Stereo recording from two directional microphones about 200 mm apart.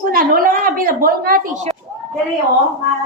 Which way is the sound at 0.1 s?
45° right (ahead or behind).